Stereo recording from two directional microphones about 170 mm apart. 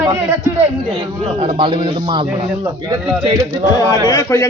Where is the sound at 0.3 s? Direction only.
15° right (ahead or behind).